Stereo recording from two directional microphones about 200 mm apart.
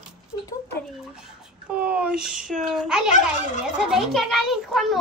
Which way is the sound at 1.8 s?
5° right (ahead or behind).